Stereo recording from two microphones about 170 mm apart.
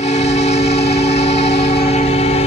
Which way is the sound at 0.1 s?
40° left (ahead or behind).